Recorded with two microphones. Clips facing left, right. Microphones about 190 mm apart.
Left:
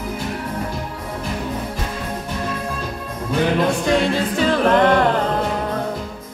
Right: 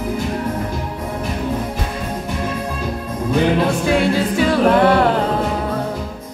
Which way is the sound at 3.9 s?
10° right (ahead or behind).